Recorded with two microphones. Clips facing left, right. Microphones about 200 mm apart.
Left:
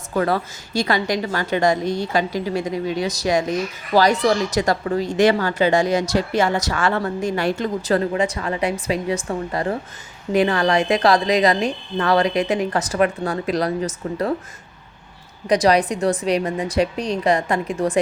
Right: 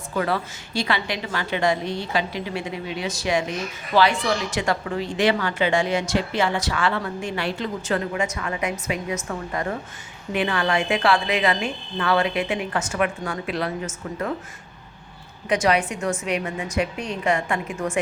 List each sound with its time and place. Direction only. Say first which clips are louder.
0.1 s a woman's voice: left 4 dB; 40° left (ahead or behind)
15.4 s a woman's voice: left 5 dB; 35° left (ahead or behind)